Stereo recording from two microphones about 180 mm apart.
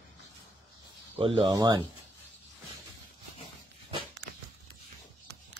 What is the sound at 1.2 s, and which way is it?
Speech, 30° right (ahead or behind).